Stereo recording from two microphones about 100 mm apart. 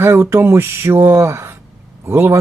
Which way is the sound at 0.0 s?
25° right (ahead or behind).